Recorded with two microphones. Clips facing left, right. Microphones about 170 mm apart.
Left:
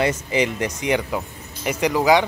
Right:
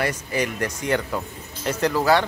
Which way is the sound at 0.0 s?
20° left (ahead or behind).